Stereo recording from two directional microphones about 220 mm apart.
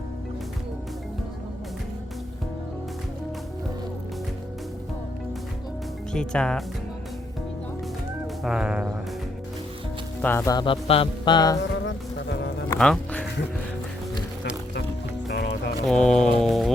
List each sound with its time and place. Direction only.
6.1 s speech: 5° left (ahead or behind)
8.4 s speech: 5° right (ahead or behind)
10.2 s speech: 10° left (ahead or behind)
11.9 s music: 50° left (ahead or behind)
12.7 s music: 5° left (ahead or behind)
15.3 s music: 50° left (ahead or behind)
15.9 s speech: 5° left (ahead or behind)